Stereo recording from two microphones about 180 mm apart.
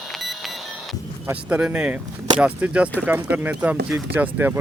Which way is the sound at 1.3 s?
5° right (ahead or behind).